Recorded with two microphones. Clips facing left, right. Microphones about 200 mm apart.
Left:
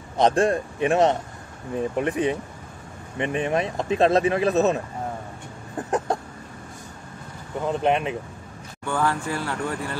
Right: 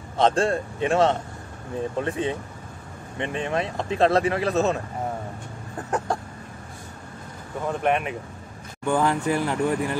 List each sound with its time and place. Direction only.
0.2 s a man's voice: 15° left (ahead or behind)
5.9 s chicken: 20° left (ahead or behind)
7.6 s speech: 20° left (ahead or behind)
8.8 s speech: 20° right (ahead or behind)